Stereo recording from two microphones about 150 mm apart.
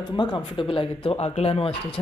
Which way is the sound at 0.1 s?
30° left (ahead or behind).